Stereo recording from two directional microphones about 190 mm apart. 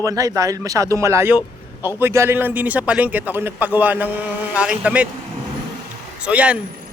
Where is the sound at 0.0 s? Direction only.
15° right (ahead or behind).